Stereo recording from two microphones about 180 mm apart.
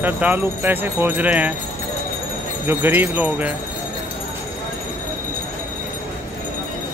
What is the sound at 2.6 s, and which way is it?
Speech, 10° right (ahead or behind).